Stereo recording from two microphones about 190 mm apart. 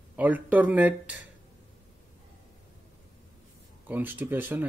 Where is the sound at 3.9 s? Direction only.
10° right (ahead or behind).